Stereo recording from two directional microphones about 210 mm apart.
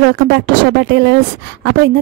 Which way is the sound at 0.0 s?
50° right (ahead or behind).